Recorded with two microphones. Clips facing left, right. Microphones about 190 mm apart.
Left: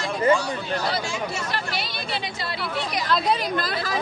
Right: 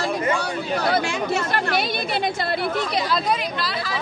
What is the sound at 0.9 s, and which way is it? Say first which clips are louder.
Speech: right 6 dB; 60° right (ahead or behind).